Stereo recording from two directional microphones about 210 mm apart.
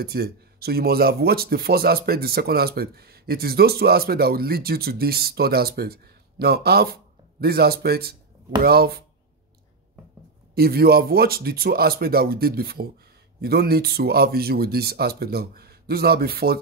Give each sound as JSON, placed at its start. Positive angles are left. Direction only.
{"t": 0.0, "sound": "speech", "side_deg": -50}
{"t": 10.5, "sound": "speech", "side_deg": -45}